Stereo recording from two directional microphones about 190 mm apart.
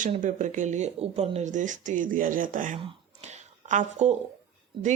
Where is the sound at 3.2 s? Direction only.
40° right (ahead or behind).